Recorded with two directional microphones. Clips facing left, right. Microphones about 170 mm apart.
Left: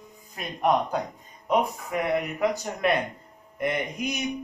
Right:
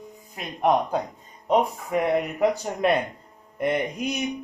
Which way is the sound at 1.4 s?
30° right (ahead or behind).